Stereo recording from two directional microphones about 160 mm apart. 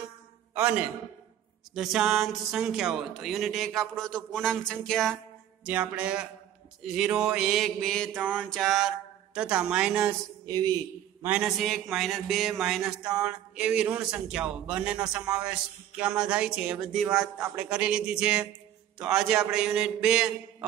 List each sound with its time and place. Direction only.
0.6 s a man's voice: 10° right (ahead or behind)
5.7 s a man's voice: 10° right (ahead or behind)
10.4 s music: 25° right (ahead or behind)
11.2 s a man's voice: 5° right (ahead or behind)